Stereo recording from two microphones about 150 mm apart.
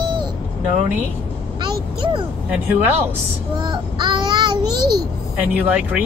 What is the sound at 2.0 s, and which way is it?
Speech, 30° right (ahead or behind).